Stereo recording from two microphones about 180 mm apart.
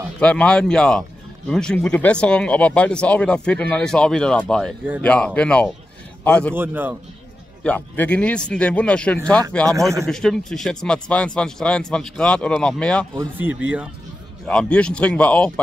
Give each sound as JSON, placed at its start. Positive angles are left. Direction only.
{"t": 0.2, "sound": "speech", "side_deg": 5}
{"t": 6.5, "sound": "speech", "side_deg": -10}
{"t": 7.6, "sound": "speech", "side_deg": 10}
{"t": 9.7, "sound": "speech", "side_deg": -15}
{"t": 10.0, "sound": "speech", "side_deg": 5}
{"t": 13.2, "sound": "speech", "side_deg": -10}
{"t": 14.4, "sound": "speech", "side_deg": 5}